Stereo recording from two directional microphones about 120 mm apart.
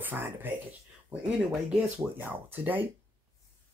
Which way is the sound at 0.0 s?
15° right (ahead or behind).